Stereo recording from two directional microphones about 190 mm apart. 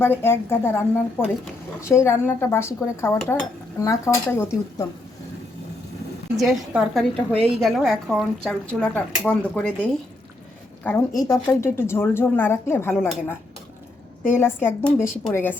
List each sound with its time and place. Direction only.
0.0 s speech: 10° left (ahead or behind)
6.3 s a woman's voice: centre (ahead or behind)
10.8 s speech: 20° left (ahead or behind)
14.3 s speech: 10° left (ahead or behind)